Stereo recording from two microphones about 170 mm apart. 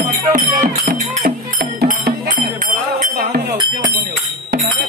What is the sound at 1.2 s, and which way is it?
Music, 65° right (ahead or behind).